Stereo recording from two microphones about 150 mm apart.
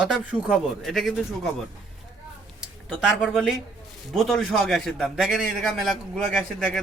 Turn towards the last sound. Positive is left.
turn(degrees=0)  # may be behind; listen again after turning